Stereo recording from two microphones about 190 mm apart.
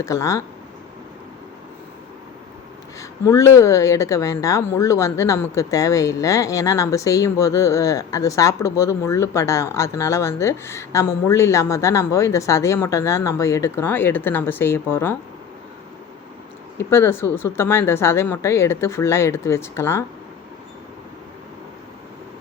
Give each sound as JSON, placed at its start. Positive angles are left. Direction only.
{"t": 0.0, "sound": "speech", "side_deg": 15}
{"t": 3.0, "sound": "speech", "side_deg": 15}
{"t": 16.7, "sound": "speech", "side_deg": 10}